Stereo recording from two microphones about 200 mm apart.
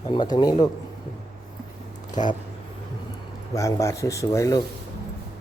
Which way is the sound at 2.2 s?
35° left (ahead or behind).